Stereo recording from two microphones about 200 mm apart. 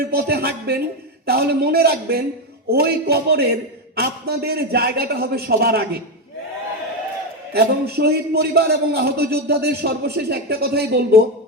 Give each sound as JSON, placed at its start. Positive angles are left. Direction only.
{"t": 0.1, "sound": "a man's voice", "side_deg": -50}
{"t": 7.5, "sound": "a man's voice", "side_deg": -50}